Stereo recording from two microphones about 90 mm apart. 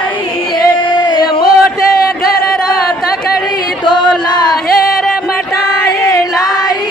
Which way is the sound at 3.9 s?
55° left (ahead or behind).